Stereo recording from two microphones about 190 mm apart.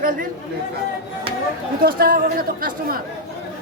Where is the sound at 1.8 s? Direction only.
50° right (ahead or behind).